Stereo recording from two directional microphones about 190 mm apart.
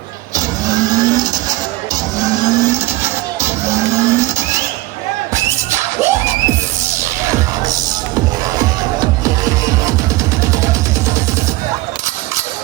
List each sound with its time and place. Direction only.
0.3 s vehicle: 20° right (ahead or behind)
5.3 s music: 15° right (ahead or behind)
8.5 s music: 20° right (ahead or behind)